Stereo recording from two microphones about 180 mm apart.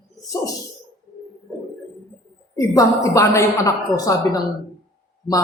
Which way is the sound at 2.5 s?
15° left (ahead or behind).